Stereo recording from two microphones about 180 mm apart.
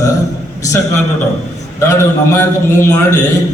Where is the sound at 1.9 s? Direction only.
15° left (ahead or behind).